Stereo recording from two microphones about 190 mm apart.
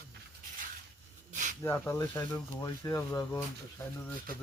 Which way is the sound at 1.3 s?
40° right (ahead or behind).